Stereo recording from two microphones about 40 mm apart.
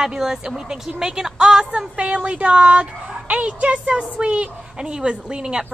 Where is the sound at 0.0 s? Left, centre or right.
Centre.